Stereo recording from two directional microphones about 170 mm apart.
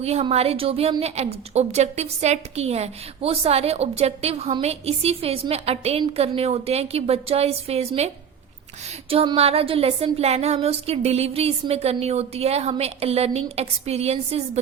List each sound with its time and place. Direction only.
0.0 s speech: 40° right (ahead or behind)